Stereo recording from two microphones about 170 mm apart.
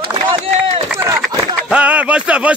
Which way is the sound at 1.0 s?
20° right (ahead or behind).